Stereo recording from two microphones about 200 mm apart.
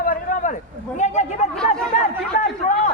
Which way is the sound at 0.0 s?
45° left (ahead or behind).